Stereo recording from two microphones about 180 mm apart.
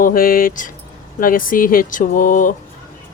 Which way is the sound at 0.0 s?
50° left (ahead or behind).